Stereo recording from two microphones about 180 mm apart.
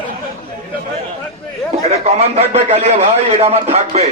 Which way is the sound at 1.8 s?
40° right (ahead or behind).